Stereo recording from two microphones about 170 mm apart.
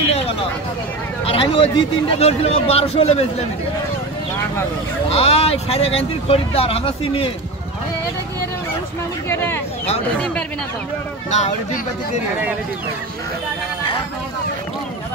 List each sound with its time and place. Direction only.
1.2 s speech: 30° left (ahead or behind)
5.1 s speech: 35° left (ahead or behind)
9.3 s a sound: 15° left (ahead or behind)
11.2 s speech: 45° left (ahead or behind)